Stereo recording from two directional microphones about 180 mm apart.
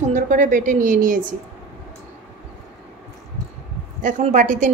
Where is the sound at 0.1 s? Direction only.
45° right (ahead or behind).